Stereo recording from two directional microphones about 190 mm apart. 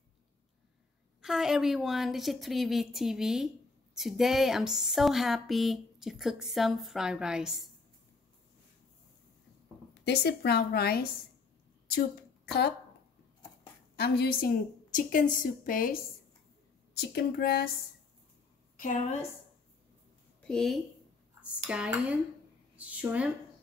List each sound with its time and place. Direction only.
1.2 s speech: centre (ahead or behind)
9.9 s a woman's voice: 60° left (ahead or behind)
12.4 s speech: 60° left (ahead or behind)
13.9 s a woman's voice: 55° left (ahead or behind)
18.8 s a woman's voice: 40° left (ahead or behind)
20.4 s speech: centre (ahead or behind)